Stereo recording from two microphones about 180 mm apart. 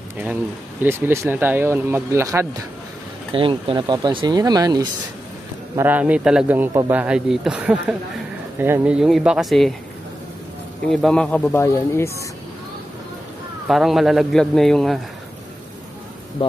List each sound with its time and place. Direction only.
0.8 s speech: 15° right (ahead or behind)
3.3 s speech: 30° right (ahead or behind)
5.8 s speech: 10° right (ahead or behind)
10.9 s speech: centre (ahead or behind)
13.7 s speech: centre (ahead or behind)